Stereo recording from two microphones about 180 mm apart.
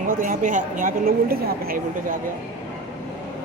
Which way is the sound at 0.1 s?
50° right (ahead or behind).